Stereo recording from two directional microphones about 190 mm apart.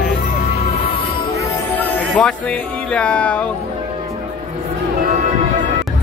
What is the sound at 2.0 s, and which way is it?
Music, 5° left (ahead or behind).